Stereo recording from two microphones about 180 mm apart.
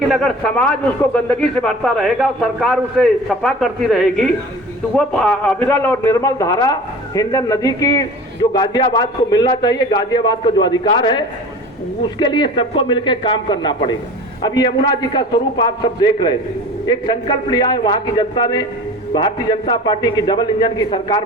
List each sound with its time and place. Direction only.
0.1 s a man's voice: 5° left (ahead or behind); by 21.2 s 25° left (ahead or behind)